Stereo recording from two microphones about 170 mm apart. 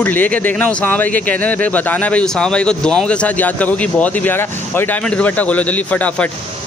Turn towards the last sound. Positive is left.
turn(degrees=10)  # may be behind; listen again after turning